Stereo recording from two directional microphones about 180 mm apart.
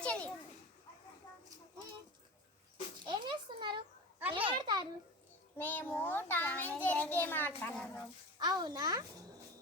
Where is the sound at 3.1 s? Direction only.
25° right (ahead or behind).